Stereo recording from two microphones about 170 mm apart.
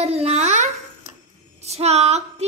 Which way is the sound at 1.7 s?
40° right (ahead or behind).